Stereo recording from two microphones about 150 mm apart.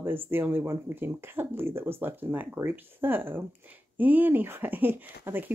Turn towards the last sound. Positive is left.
turn(degrees=-15)  # may be behind; listen again after turning